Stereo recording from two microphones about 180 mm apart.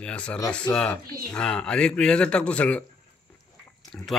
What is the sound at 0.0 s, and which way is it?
Speech, 5° left (ahead or behind).